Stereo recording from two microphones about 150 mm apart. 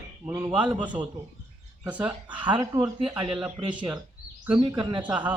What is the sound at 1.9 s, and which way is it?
Speech, 10° right (ahead or behind).